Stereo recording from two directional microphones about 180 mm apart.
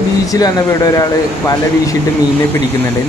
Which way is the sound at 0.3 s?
20° left (ahead or behind).